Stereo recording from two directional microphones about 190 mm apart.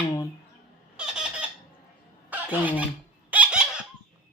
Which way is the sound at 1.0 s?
5° right (ahead or behind).